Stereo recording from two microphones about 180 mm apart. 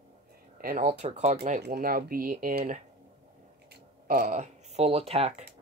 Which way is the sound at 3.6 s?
50° right (ahead or behind).